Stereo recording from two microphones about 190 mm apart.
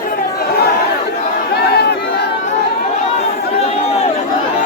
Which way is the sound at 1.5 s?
55° left (ahead or behind).